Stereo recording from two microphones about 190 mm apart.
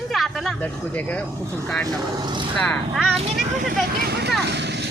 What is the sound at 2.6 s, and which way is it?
Speech, 5° left (ahead or behind).